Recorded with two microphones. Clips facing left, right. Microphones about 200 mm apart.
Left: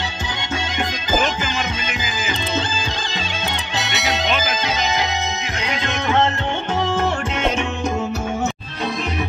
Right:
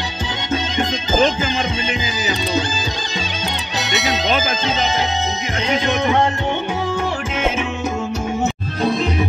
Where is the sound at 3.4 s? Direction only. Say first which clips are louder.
Right 1 dB; 20° right (ahead or behind).